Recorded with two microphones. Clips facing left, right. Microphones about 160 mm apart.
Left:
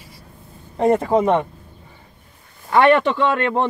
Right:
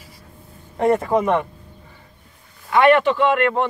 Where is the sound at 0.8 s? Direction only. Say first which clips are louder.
Left 1 dB; 25° left (ahead or behind).